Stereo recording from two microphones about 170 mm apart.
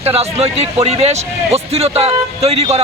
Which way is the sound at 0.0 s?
35° right (ahead or behind).